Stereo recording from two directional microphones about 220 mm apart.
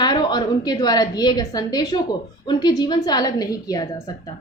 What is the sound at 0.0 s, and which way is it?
A woman's voice, 20° left (ahead or behind).